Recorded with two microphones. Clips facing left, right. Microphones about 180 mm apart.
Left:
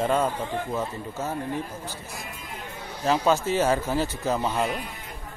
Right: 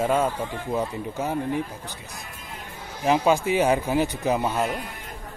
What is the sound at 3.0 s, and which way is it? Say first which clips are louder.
Speech: right 2 dB; 15° right (ahead or behind).